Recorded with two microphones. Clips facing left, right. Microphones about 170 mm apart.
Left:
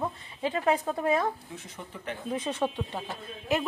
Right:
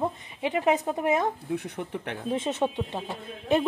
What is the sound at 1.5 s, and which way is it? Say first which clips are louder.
Speech: right 10 dB; 65° right (ahead or behind).